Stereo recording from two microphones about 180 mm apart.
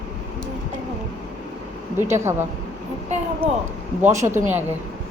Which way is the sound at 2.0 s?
15° right (ahead or behind).